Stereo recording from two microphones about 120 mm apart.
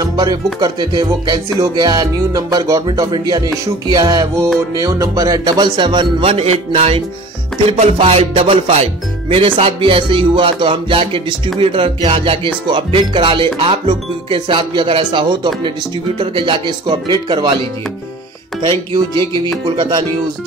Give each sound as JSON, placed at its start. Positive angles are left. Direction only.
{"t": 0.0, "sound": "music", "side_deg": -35}
{"t": 7.6, "sound": "speech", "side_deg": -55}
{"t": 16.2, "sound": "music", "side_deg": -45}
{"t": 18.7, "sound": "music", "side_deg": -35}
{"t": 19.1, "sound": "music", "side_deg": 30}
{"t": 19.8, "sound": "music", "side_deg": -40}